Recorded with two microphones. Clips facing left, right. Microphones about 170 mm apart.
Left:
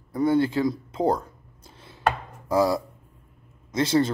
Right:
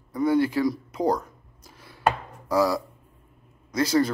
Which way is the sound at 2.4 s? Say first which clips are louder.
Left 1 dB; 25° left (ahead or behind).